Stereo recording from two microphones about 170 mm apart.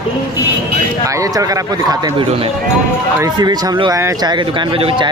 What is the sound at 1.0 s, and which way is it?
Speech, 20° right (ahead or behind).